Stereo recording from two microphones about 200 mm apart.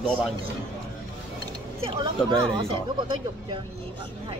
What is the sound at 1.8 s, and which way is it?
Speech, 25° right (ahead or behind).